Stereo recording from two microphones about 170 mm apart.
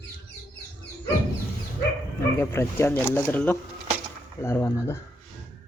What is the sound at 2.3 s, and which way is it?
Speech, 15° left (ahead or behind).